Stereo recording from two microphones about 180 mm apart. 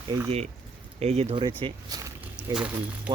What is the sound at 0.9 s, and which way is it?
Speech, 35° right (ahead or behind).